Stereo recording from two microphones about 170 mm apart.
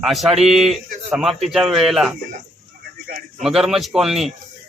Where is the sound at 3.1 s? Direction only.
55° right (ahead or behind).